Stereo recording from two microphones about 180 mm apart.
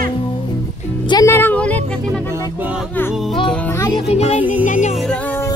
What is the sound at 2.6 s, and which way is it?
Music, 5° right (ahead or behind).